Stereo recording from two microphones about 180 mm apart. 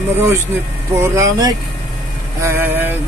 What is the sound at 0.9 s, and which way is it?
Speech, 15° right (ahead or behind).